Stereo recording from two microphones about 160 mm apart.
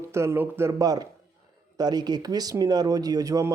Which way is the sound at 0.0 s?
15° right (ahead or behind).